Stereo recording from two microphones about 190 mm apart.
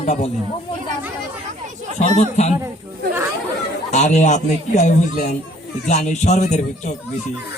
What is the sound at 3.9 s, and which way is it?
Speech, 40° left (ahead or behind).